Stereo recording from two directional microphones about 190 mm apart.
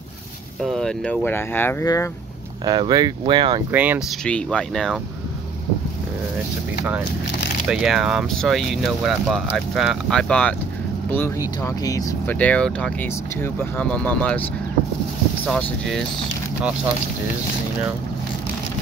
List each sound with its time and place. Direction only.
0.6 s speech: centre (ahead or behind)
2.6 s speech: 20° right (ahead or behind)
3.7 s speech: 10° right (ahead or behind)
4.2 s speech: 5° left (ahead or behind)
7.7 s speech: centre (ahead or behind); by 12.4 s 15° left (ahead or behind)
12.4 s speech: 5° left (ahead or behind)
15.4 s speech: centre (ahead or behind)